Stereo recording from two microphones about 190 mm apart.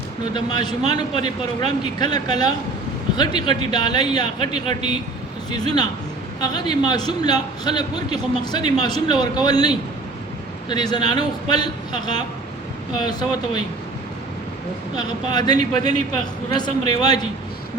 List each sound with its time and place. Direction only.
0.3 s a man's voice: 20° left (ahead or behind)
14.9 s a man's voice: 20° left (ahead or behind)